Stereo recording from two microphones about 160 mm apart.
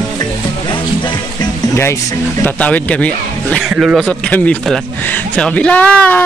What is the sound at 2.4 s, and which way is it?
Speech, 10° left (ahead or behind).